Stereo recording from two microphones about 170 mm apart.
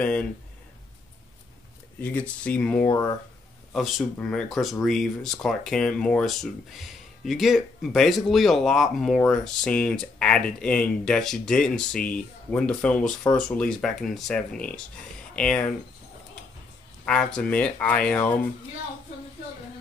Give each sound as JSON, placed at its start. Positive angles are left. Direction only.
{"t": 0.0, "sound": "speech", "side_deg": 5}
{"t": 2.0, "sound": "speech", "side_deg": 10}
{"t": 17.0, "sound": "speech", "side_deg": 5}